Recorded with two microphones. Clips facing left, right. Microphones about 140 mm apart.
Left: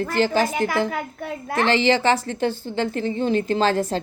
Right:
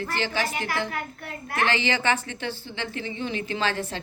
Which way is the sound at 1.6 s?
30° left (ahead or behind).